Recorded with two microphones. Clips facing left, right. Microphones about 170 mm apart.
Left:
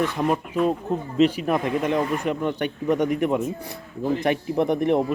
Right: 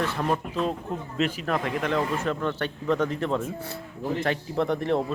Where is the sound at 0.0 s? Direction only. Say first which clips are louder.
Left 4 dB; 15° left (ahead or behind).